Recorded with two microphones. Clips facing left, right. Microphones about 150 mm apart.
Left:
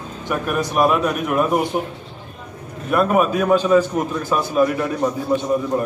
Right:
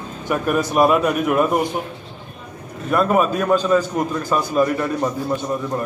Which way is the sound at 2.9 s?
5° left (ahead or behind).